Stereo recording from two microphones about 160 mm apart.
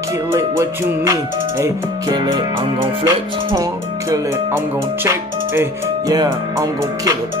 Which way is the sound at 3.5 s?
20° right (ahead or behind).